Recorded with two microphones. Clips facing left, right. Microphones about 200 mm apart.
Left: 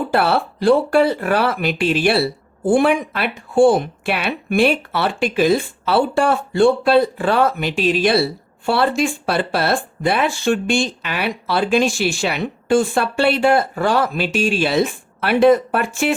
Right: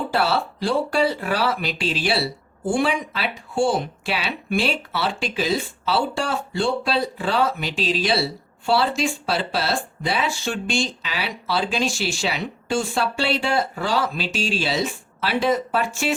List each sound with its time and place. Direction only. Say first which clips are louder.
0.1 s speech: left 5 dB; 55° left (ahead or behind)